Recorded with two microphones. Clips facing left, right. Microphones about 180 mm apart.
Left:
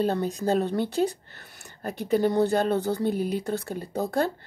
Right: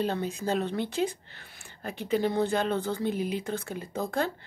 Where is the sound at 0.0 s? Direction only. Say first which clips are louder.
Left 4 dB; 40° left (ahead or behind).